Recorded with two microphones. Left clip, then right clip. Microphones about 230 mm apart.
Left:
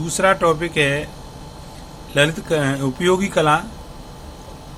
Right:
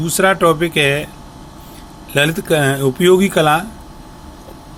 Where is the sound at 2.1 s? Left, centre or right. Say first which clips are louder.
Right 3 dB; right.